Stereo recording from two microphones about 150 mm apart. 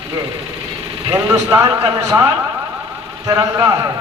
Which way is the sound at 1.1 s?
20° right (ahead or behind).